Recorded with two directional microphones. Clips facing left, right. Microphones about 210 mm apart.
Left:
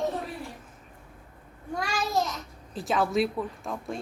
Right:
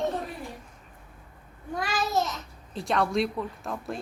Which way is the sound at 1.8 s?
Centre (ahead or behind).